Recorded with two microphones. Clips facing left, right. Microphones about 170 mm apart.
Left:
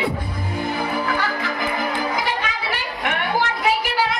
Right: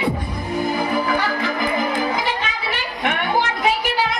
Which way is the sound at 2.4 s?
25° right (ahead or behind).